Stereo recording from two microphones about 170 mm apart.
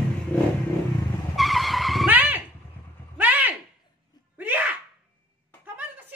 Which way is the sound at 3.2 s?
10° right (ahead or behind).